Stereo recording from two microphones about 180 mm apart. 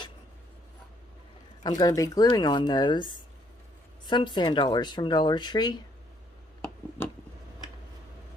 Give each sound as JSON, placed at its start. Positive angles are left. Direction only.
{"t": 1.6, "sound": "speech", "side_deg": 20}